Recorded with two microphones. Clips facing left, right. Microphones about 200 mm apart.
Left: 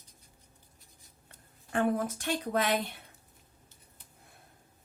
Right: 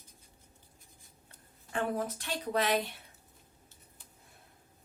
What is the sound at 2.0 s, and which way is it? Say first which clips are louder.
Speech: left 4 dB; 50° left (ahead or behind).